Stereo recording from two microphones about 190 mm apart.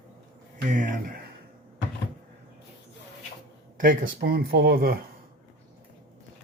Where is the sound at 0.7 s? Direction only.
45° right (ahead or behind).